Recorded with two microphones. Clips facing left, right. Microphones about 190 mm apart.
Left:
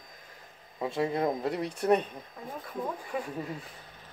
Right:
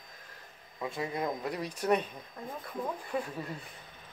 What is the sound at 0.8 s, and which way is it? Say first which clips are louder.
Speech: left 5 dB; 30° left (ahead or behind).